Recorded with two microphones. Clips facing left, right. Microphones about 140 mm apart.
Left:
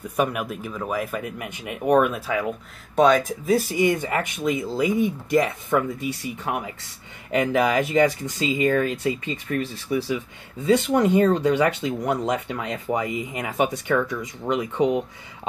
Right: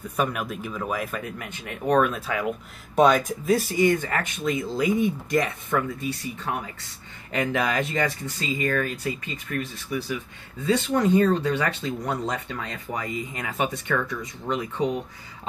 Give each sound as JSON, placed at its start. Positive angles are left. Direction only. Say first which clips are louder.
{"t": 0.1, "sound": "speech", "louder": "left 3 dB", "side_deg": 10}
{"t": 11.0, "sound": "speech", "louder": "left 2 dB", "side_deg": 15}